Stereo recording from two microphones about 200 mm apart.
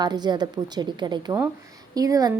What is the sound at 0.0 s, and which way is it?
A woman's voice, 20° right (ahead or behind).